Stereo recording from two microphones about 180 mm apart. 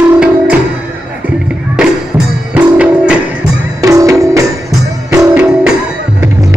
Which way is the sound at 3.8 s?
20° right (ahead or behind).